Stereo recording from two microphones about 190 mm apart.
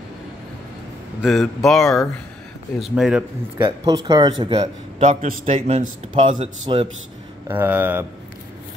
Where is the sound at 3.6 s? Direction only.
20° right (ahead or behind).